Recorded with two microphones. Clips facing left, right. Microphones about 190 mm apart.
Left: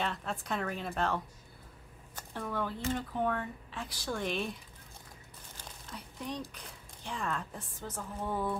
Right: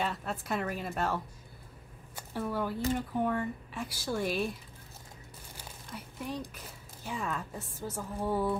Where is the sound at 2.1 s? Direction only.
10° right (ahead or behind).